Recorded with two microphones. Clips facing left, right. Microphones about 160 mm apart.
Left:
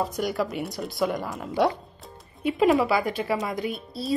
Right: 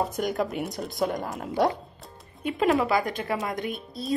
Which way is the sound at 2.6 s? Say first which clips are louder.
Left 2 dB; 5° left (ahead or behind).